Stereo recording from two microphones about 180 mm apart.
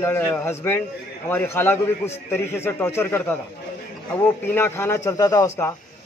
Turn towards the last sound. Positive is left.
turn(degrees=15)  # may be behind; listen again after turning